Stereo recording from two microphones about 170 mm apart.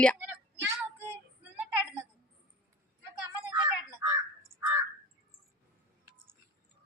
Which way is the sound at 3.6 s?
20° right (ahead or behind).